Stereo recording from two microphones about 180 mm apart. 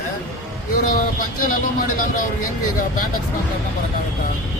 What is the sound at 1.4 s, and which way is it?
Speech, 50° left (ahead or behind).